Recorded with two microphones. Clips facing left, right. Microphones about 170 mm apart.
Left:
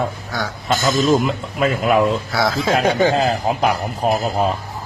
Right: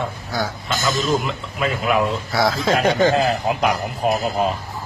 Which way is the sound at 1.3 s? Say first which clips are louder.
Left 4 dB; 45° left (ahead or behind).